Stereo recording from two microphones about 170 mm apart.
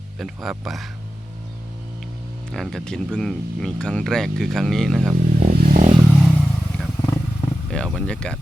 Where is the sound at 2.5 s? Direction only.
Centre (ahead or behind).